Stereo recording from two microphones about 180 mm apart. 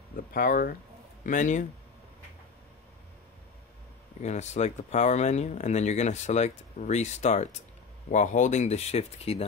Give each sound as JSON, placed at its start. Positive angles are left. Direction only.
{"t": 0.1, "sound": "speech", "side_deg": 50}
{"t": 4.2, "sound": "speech", "side_deg": 40}